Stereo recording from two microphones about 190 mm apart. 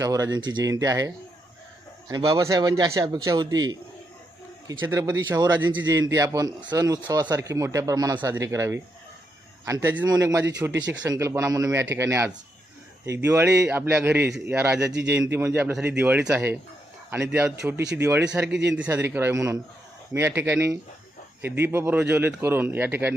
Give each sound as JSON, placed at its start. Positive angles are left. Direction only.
{"t": 0.0, "sound": "a man's voice", "side_deg": -20}
{"t": 4.8, "sound": "a man's voice", "side_deg": -10}
{"t": 10.7, "sound": "speech", "side_deg": -70}
{"t": 11.1, "sound": "a man's voice", "side_deg": -15}
{"t": 14.8, "sound": "speech", "side_deg": -65}
{"t": 15.1, "sound": "a man's voice", "side_deg": -10}